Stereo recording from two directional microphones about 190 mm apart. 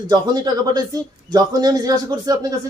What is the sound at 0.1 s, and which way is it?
A man's voice, 20° right (ahead or behind).